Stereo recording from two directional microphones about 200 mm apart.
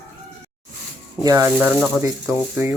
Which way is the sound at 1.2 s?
15° right (ahead or behind).